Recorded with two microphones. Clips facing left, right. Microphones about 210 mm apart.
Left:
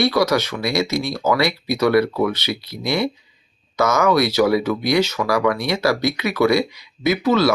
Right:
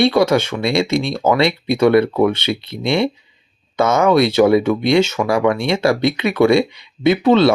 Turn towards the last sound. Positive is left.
turn(degrees=-25)  # may be behind; listen again after turning